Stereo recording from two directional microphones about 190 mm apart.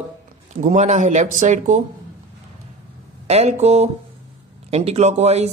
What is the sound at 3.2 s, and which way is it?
A man's voice, 35° right (ahead or behind).